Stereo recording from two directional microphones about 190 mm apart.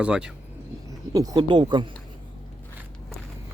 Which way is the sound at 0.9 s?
20° right (ahead or behind).